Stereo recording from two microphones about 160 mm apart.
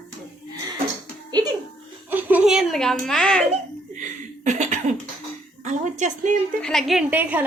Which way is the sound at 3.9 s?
50° right (ahead or behind).